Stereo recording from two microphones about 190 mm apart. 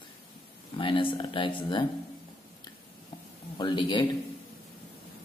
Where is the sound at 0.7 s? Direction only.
25° left (ahead or behind).